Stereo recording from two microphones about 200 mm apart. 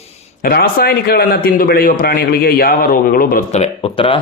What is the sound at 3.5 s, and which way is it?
Speech, 30° left (ahead or behind).